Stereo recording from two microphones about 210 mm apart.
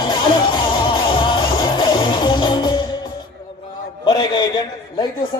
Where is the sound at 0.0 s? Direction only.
20° left (ahead or behind).